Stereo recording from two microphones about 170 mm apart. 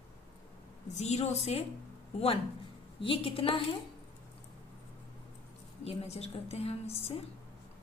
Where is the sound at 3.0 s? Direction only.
30° left (ahead or behind).